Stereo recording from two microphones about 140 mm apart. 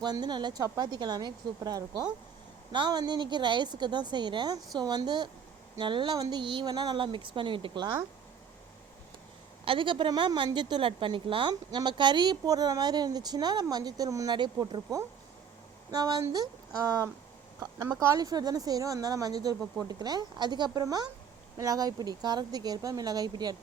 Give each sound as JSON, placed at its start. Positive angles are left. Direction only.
{"t": 0.0, "sound": "a woman's voice", "side_deg": -30}
{"t": 9.6, "sound": "a woman's voice", "side_deg": -35}